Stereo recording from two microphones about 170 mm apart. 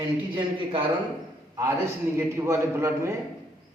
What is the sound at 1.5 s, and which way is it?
A man's voice, 20° right (ahead or behind).